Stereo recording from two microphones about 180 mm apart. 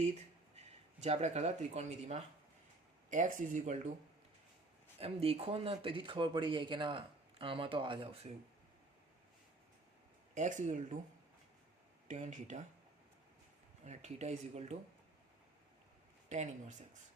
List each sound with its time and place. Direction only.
0.5 s speech: 40° right (ahead or behind)
4.9 s speech: 30° right (ahead or behind)
10.3 s speech: 40° right (ahead or behind)
12.0 s speech: 40° right (ahead or behind)
13.8 s speech: 40° right (ahead or behind)
16.3 s speech: 40° right (ahead or behind)